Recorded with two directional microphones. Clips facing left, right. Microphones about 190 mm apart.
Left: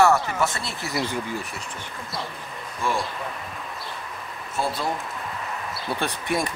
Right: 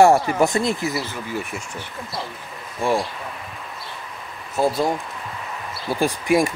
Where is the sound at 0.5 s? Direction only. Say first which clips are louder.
Right 11 dB; 15° right (ahead or behind).